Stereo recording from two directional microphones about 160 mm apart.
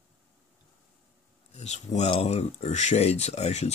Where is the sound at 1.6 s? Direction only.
45° left (ahead or behind).